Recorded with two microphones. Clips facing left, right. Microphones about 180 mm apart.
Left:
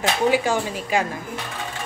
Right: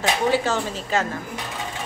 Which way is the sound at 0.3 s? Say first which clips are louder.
Left 1 dB; 15° left (ahead or behind).